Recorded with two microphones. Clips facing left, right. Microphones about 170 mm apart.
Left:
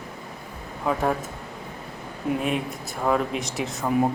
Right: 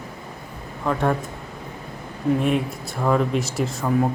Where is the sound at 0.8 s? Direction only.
5° left (ahead or behind).